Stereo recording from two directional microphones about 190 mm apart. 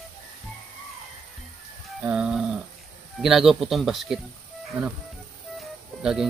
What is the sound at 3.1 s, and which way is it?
A man's voice, centre (ahead or behind).